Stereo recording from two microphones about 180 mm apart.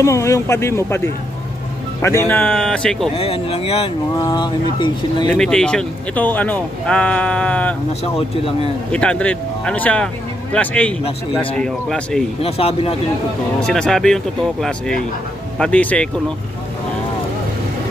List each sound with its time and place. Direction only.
0.0 s speech: 15° left (ahead or behind)
3.2 s speech: 35° left (ahead or behind)
4.1 s speech: 20° left (ahead or behind)
5.3 s speech: 5° left (ahead or behind)
8.9 s speech: 5° left (ahead or behind)
12.4 s speech: 35° left (ahead or behind)
13.6 s speech: 5° left (ahead or behind)